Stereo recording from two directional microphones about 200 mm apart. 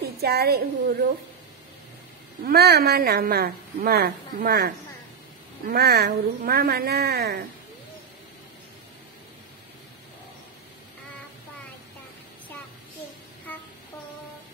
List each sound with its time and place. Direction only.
0.0 s a woman's voice: 50° right (ahead or behind)
2.4 s a woman's voice: 50° right (ahead or behind)